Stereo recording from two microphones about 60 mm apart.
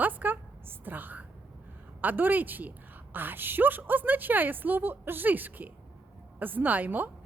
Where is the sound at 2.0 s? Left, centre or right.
Right.